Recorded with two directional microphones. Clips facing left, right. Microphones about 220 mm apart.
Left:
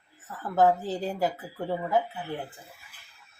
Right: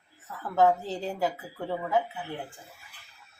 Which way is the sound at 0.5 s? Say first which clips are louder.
Left 1 dB; 5° left (ahead or behind).